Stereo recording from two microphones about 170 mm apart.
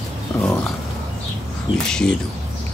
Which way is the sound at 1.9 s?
5° left (ahead or behind).